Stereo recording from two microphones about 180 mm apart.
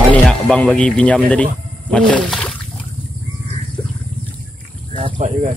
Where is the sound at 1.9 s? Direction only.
5° left (ahead or behind).